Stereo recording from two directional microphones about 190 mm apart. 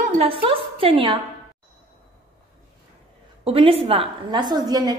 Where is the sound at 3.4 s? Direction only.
30° right (ahead or behind).